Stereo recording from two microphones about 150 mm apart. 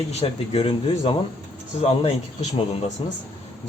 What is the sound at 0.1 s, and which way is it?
Speech, 40° left (ahead or behind).